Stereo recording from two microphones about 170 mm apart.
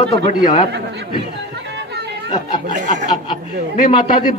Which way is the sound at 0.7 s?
85° right.